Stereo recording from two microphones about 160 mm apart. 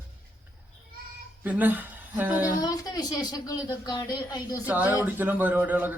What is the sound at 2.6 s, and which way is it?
A woman's voice, 25° left (ahead or behind).